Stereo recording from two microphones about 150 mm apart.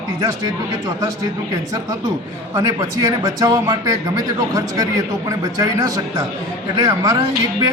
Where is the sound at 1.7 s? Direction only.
20° right (ahead or behind).